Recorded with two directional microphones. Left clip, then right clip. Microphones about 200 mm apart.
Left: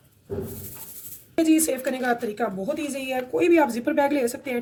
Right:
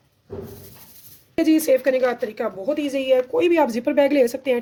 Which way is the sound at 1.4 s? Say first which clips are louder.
Right 4 dB; 40° right (ahead or behind).